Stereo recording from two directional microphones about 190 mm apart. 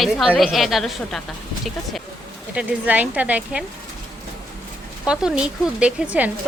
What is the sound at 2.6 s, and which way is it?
Speech, 10° right (ahead or behind).